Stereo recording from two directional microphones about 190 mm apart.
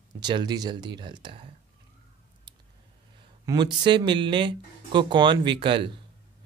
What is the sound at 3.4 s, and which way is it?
Speech, 25° right (ahead or behind).